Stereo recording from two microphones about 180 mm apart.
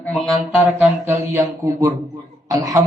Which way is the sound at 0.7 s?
15° right (ahead or behind).